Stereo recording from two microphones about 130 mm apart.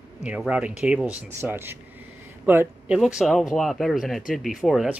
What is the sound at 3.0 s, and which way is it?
Speech, centre (ahead or behind).